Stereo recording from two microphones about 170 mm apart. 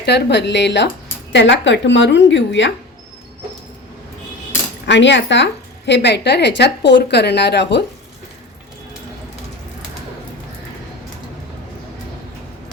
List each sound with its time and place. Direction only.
0.0 s a woman's voice: 85° left
4.9 s a woman's voice: 90° left